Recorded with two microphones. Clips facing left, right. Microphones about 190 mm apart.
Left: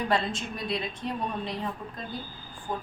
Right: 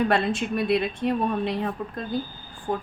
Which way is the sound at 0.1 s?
65° right (ahead or behind).